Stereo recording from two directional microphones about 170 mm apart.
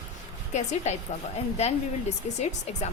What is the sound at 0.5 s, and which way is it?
A woman's voice, 45° left (ahead or behind).